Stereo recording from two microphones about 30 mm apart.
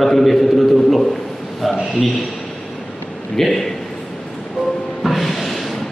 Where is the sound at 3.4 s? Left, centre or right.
Centre.